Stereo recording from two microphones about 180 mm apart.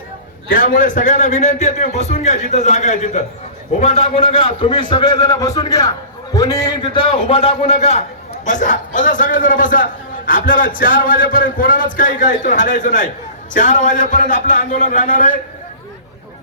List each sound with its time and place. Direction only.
0.5 s a man's voice: 50° left (ahead or behind)